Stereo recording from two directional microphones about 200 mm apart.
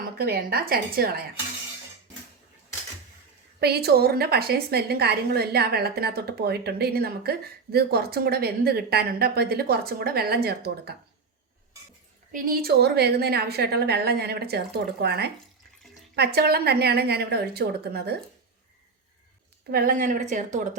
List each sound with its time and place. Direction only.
0.2 s a woman's voice: 50° right (ahead or behind)
3.6 s a woman's voice: 50° right (ahead or behind)
12.3 s a woman's voice: 45° right (ahead or behind)
19.7 s speech: 45° right (ahead or behind)